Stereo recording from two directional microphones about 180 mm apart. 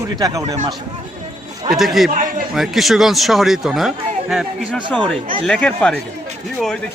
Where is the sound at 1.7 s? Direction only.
Centre (ahead or behind).